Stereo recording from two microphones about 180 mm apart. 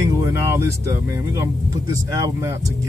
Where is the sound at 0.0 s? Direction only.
15° right (ahead or behind).